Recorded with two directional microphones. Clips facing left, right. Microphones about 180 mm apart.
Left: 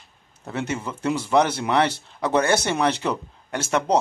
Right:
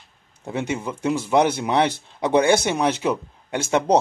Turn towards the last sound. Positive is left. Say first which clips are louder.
# right 3 dB
turn(degrees=-20)  # may be behind; listen again after turning